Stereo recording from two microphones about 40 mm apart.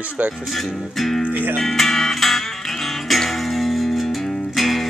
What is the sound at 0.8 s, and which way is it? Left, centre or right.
Music, centre.